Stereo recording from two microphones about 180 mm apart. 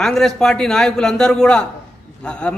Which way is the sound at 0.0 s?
5° left (ahead or behind).